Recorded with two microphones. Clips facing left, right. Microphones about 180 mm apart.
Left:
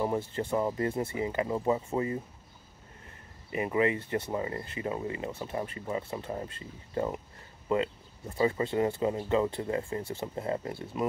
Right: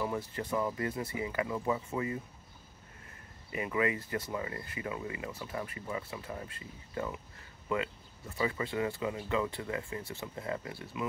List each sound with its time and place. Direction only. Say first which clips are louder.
0.0 s speech: left 5 dB; 30° left (ahead or behind)
3.5 s speech: left 4 dB; 25° left (ahead or behind)